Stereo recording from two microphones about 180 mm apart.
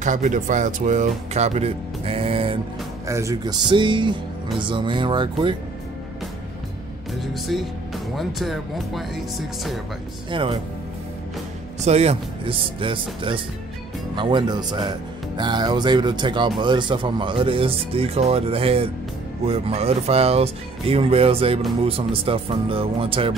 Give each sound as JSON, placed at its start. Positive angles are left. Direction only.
{"t": 0.0, "sound": "speech", "side_deg": -45}
{"t": 3.1, "sound": "speech", "side_deg": -15}
{"t": 7.2, "sound": "speech", "side_deg": 0}
{"t": 10.3, "sound": "speech", "side_deg": -30}
{"t": 11.8, "sound": "speech", "side_deg": -35}